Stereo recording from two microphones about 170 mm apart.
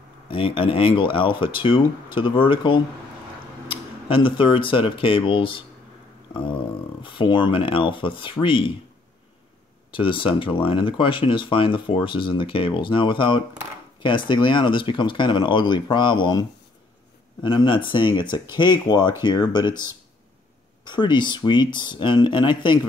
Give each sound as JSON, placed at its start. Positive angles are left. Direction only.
{"t": 0.3, "sound": "speech", "side_deg": 30}
{"t": 7.0, "sound": "speech", "side_deg": 30}
{"t": 9.8, "sound": "speech", "side_deg": 30}